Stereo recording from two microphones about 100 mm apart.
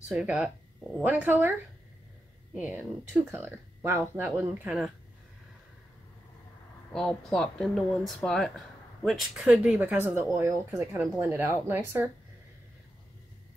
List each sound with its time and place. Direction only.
0.1 s speech: 10° right (ahead or behind)
1.0 s speech: 20° right (ahead or behind)
2.5 s speech: 15° right (ahead or behind)
3.3 s speech: 30° right (ahead or behind)
6.9 s speech: 5° left (ahead or behind); by 12.1 s 20° right (ahead or behind)